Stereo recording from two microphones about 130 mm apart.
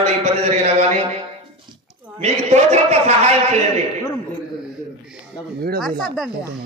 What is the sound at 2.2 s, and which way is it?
A man's voice, 55° right (ahead or behind).